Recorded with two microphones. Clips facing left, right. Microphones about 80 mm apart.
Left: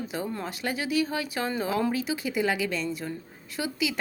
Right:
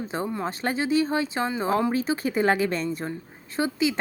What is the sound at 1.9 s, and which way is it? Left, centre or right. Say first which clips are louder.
A woman's voice: right 4 dB; right.